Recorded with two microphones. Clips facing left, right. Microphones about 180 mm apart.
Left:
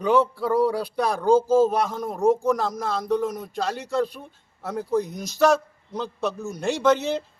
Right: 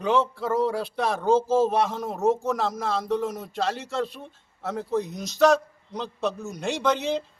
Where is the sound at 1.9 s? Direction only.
5° right (ahead or behind).